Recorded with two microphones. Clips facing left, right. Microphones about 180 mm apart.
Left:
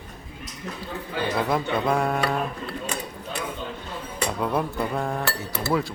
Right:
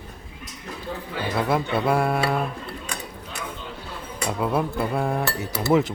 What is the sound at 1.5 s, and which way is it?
Speech, 5° right (ahead or behind).